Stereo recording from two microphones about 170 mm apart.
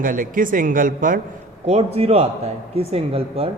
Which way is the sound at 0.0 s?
55° right (ahead or behind).